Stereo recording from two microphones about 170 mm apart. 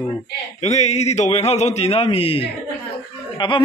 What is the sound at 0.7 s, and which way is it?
A man's voice, 40° left (ahead or behind).